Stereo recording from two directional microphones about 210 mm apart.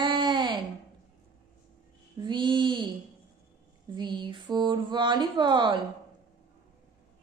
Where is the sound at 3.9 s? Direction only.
20° right (ahead or behind).